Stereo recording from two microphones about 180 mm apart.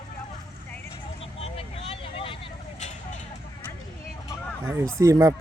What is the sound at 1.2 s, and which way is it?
Vehicle, 35° left (ahead or behind).